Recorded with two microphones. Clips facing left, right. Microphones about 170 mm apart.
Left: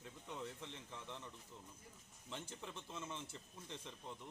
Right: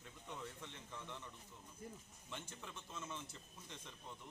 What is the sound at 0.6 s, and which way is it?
Speech, 30° left (ahead or behind).